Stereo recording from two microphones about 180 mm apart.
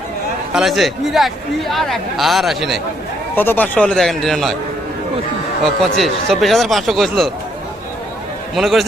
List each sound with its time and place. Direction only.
0.5 s a man's voice: centre (ahead or behind)
3.3 s a man's voice: 10° left (ahead or behind)
5.6 s a man's voice: centre (ahead or behind)
8.5 s a man's voice: centre (ahead or behind)